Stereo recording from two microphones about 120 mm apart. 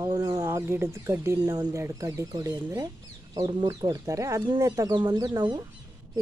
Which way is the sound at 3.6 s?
30° right (ahead or behind).